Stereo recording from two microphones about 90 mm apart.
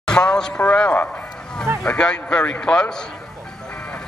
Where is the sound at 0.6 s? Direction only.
10° left (ahead or behind).